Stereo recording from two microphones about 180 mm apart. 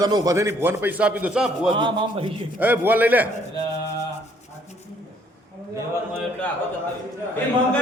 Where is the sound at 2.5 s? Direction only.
10° right (ahead or behind).